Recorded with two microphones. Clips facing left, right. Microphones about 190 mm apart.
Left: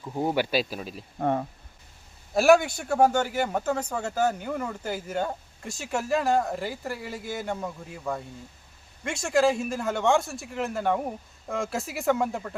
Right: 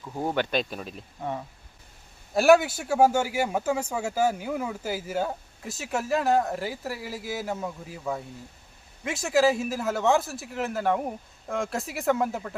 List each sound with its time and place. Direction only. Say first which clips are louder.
0.0 s speech: left 2 dB; 10° left (ahead or behind)
1.2 s speech: left 7 dB; 55° left (ahead or behind)
2.3 s speech: even; centre (ahead or behind)